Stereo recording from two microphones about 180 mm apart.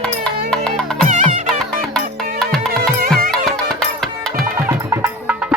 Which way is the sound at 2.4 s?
5° left (ahead or behind).